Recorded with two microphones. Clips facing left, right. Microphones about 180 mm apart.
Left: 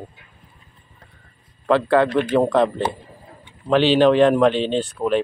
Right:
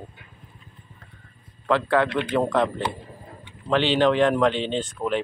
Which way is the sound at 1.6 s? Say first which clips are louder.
Left 5 dB; 15° left (ahead or behind).